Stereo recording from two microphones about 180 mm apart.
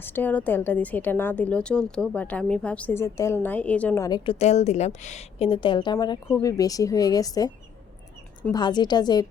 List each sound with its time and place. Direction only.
0.0 s a woman's voice: 10° left (ahead or behind)
4.4 s a woman's voice: 40° left (ahead or behind); by 7.5 s 20° left (ahead or behind)
8.5 s speech: 25° left (ahead or behind)